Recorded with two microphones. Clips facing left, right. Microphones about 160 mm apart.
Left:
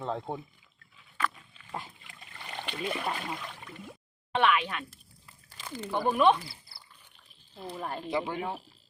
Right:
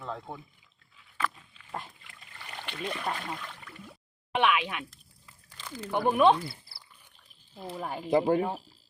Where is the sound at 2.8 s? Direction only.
10° left (ahead or behind).